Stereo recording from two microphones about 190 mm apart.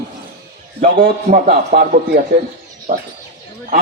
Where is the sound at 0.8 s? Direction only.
45° right (ahead or behind).